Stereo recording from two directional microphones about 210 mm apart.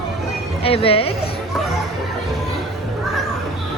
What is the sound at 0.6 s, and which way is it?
Speech, 25° left (ahead or behind).